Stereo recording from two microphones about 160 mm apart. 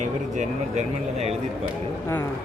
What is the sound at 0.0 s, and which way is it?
Speech, 50° right (ahead or behind).